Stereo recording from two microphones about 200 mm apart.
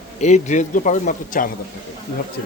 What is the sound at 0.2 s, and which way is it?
Speech, 35° left (ahead or behind).